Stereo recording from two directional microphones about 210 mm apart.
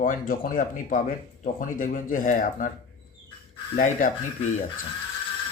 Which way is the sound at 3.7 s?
40° left (ahead or behind).